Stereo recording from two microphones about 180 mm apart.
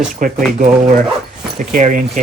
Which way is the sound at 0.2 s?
45° right (ahead or behind).